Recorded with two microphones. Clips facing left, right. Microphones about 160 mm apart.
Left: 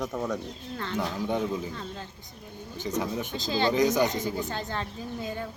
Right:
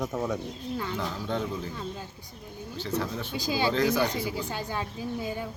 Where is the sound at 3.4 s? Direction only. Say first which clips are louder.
Even; 10° right (ahead or behind).